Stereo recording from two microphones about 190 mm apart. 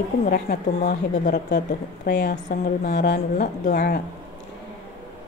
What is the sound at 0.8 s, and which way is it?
Speech, 40° left (ahead or behind).